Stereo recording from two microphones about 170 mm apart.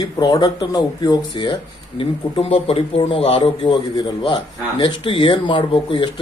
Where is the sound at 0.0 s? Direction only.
20° left (ahead or behind).